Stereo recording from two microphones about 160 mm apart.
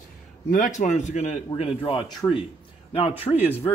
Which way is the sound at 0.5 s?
50° left (ahead or behind).